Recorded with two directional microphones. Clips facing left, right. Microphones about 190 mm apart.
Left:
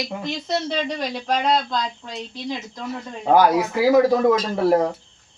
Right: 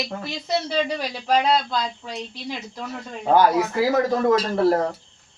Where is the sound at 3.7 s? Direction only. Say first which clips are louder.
Left 4 dB; 10° left (ahead or behind).